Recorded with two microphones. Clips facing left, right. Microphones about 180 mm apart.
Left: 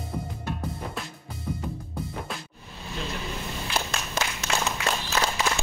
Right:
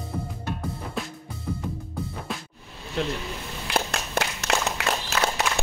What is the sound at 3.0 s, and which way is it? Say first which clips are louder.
Vehicle: right 8 dB; 70° right (ahead or behind).